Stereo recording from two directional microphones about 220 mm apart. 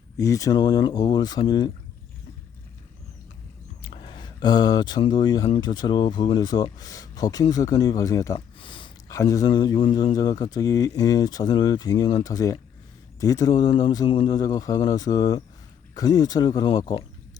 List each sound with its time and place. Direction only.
0.2 s speech: 15° left (ahead or behind)
3.8 s speech: 20° left (ahead or behind)